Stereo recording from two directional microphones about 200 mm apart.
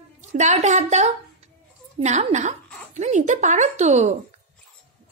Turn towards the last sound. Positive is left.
turn(degrees=-35)  # may be behind; listen again after turning